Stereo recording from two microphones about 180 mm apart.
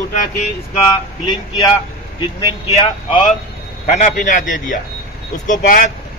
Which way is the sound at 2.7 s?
35° left (ahead or behind).